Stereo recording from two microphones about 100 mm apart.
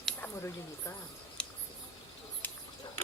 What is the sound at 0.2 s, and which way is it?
Speech, 30° left (ahead or behind).